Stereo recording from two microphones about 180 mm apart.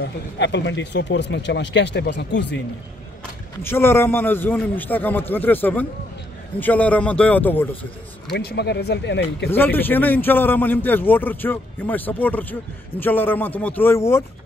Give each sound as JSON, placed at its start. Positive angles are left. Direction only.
{"t": 0.0, "sound": "speech", "side_deg": 75}
{"t": 3.6, "sound": "a man's voice", "side_deg": 15}
{"t": 8.3, "sound": "speech", "side_deg": 65}
{"t": 9.5, "sound": "a man's voice", "side_deg": 10}